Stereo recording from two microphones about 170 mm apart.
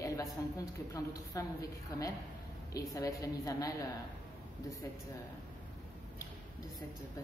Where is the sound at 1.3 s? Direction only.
20° left (ahead or behind).